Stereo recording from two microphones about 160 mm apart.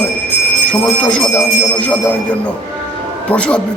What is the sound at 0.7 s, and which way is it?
Speech, 5° left (ahead or behind).